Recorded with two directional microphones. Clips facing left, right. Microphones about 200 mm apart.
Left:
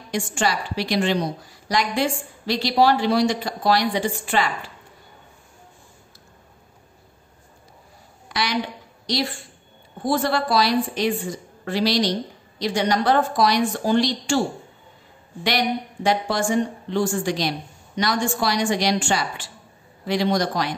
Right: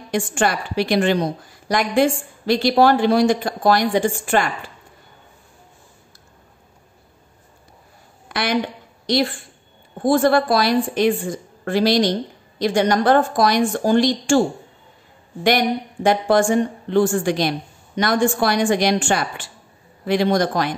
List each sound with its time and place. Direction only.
0.1 s a woman's voice: 55° right (ahead or behind)
8.3 s a woman's voice: 55° right (ahead or behind)
15.4 s a woman's voice: 50° right (ahead or behind)